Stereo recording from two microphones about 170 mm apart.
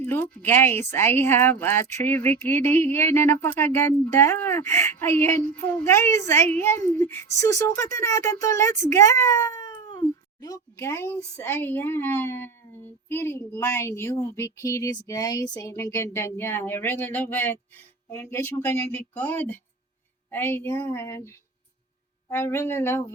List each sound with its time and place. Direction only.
0.0 s speech: 10° left (ahead or behind)
9.7 s cat: 25° left (ahead or behind)
10.8 s speech: 15° left (ahead or behind)